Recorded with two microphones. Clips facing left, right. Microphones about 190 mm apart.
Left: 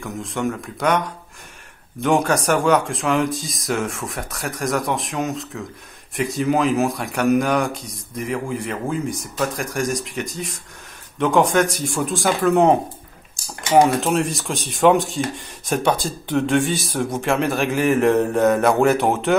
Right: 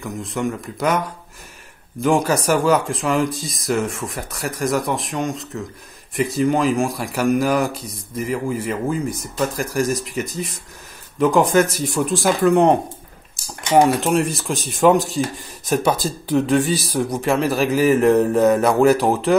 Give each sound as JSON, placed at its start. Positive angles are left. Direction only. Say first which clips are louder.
{"t": 0.0, "sound": "speech", "louder": "right 1 dB", "side_deg": 0}
{"t": 13.7, "sound": "speech", "louder": "right 1 dB", "side_deg": 0}